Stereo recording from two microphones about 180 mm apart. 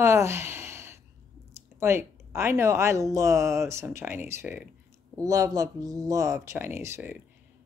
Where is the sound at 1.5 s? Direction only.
15° right (ahead or behind).